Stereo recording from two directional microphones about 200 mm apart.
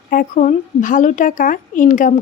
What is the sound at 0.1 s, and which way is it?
Speech, 40° left (ahead or behind).